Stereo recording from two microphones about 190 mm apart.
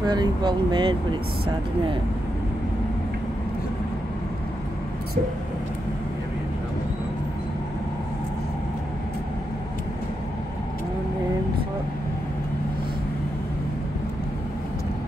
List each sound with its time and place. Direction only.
0.0 s speech: 20° right (ahead or behind)